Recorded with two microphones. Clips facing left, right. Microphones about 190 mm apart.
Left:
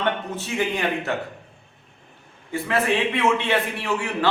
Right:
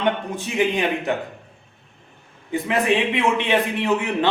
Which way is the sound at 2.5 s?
15° right (ahead or behind).